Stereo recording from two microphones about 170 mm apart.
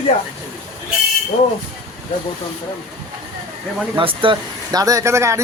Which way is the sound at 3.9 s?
30° right (ahead or behind).